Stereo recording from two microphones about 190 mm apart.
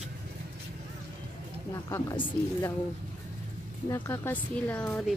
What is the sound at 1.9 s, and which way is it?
Speech, 20° left (ahead or behind).